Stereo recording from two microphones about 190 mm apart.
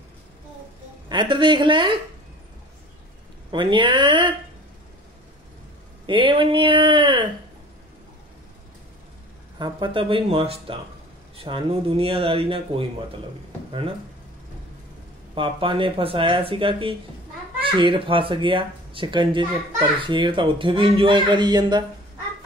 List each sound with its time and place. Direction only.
1.0 s speech: 25° right (ahead or behind)
3.5 s speech: 25° right (ahead or behind)
6.0 s speech: 25° right (ahead or behind)
9.6 s speech: 25° right (ahead or behind)
15.3 s speech: 25° right (ahead or behind)